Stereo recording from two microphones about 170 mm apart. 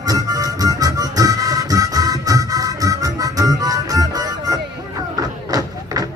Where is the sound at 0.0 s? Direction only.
20° right (ahead or behind).